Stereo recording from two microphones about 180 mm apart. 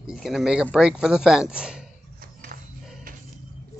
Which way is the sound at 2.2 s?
50° right (ahead or behind).